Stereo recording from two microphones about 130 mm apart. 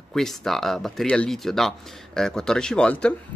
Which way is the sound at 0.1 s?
5° left (ahead or behind).